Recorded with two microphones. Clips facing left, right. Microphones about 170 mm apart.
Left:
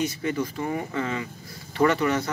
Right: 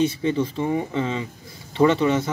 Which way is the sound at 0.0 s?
25° right (ahead or behind).